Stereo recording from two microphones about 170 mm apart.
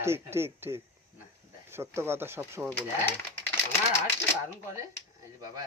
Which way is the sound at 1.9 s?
15° right (ahead or behind).